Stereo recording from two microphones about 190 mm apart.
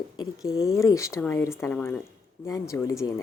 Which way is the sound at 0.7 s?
15° left (ahead or behind).